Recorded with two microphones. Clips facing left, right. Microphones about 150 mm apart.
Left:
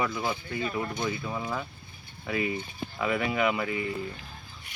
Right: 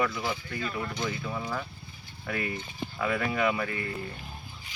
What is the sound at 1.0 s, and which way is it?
Speech, 10° left (ahead or behind).